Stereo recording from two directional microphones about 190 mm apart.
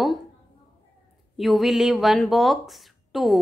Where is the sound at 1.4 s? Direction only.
Centre (ahead or behind).